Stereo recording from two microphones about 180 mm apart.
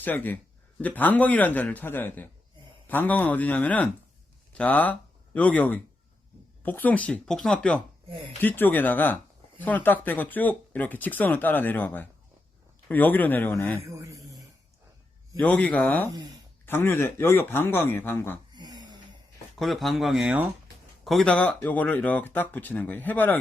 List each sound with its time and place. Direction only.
0.0 s speech: 10° left (ahead or behind)
13.7 s a sound: 15° right (ahead or behind)
15.4 s speech: 10° left (ahead or behind)
16.0 s speech: 20° right (ahead or behind)
16.6 s speech: 10° left (ahead or behind)
18.5 s snort: 25° right (ahead or behind)
19.5 s speech: centre (ahead or behind)